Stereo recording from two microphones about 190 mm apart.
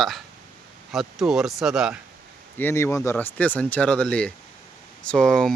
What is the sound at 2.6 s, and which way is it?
Speech, 10° left (ahead or behind).